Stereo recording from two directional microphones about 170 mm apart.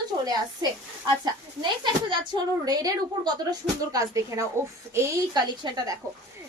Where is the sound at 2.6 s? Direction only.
20° right (ahead or behind).